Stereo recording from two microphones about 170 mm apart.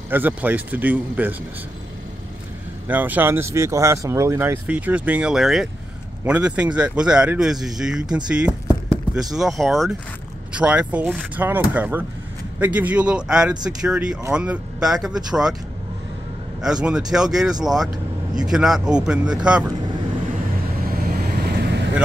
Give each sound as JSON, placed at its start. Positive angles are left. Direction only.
{"t": 0.1, "sound": "speech", "side_deg": -10}
{"t": 2.9, "sound": "speech", "side_deg": -10}
{"t": 16.6, "sound": "speech", "side_deg": -5}
{"t": 20.8, "sound": "vehicle", "side_deg": -60}